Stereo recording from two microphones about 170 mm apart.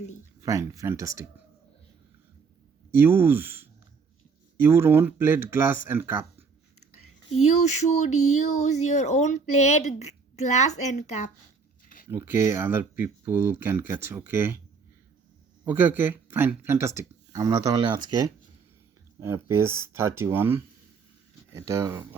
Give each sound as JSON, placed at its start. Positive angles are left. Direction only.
{"t": 0.4, "sound": "speech", "side_deg": -20}
{"t": 2.9, "sound": "speech", "side_deg": -15}
{"t": 7.3, "sound": "a sound", "side_deg": 40}
{"t": 12.1, "sound": "speech", "side_deg": -15}
{"t": 15.6, "sound": "speech", "side_deg": -10}
{"t": 19.2, "sound": "speech", "side_deg": -15}